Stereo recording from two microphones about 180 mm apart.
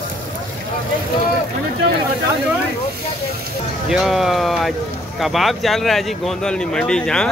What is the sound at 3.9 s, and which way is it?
Speech, centre (ahead or behind).